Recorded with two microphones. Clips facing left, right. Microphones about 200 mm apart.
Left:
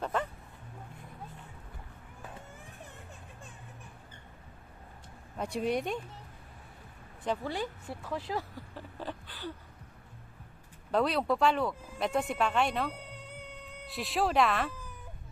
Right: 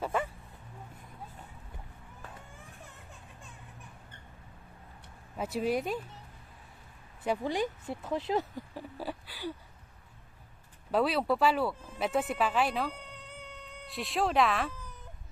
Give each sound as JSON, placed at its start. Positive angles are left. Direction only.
{"t": 0.0, "sound": "bow-wow", "side_deg": -10}
{"t": 5.4, "sound": "speech", "side_deg": -5}
{"t": 7.3, "sound": "a sound", "side_deg": -15}
{"t": 10.9, "sound": "speech", "side_deg": -5}